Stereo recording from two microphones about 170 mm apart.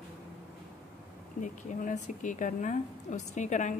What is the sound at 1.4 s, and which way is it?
A woman's voice, 50° left (ahead or behind).